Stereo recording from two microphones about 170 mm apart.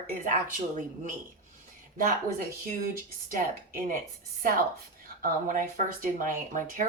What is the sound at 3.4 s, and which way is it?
Speech, 50° right (ahead or behind).